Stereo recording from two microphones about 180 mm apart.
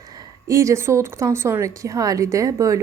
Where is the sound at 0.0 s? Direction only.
20° right (ahead or behind).